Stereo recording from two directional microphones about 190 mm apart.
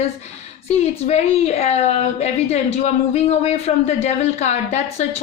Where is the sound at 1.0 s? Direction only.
35° left (ahead or behind).